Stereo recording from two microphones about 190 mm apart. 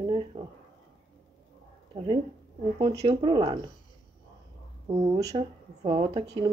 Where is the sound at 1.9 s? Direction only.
25° right (ahead or behind).